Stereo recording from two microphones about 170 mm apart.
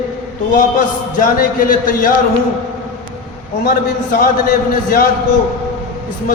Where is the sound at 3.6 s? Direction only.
60° left (ahead or behind).